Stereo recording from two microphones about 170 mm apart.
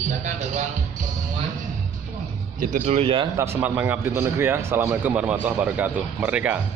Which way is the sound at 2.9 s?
30° right (ahead or behind).